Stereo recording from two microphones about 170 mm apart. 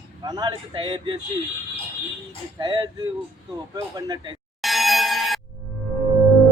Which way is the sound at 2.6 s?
25° right (ahead or behind).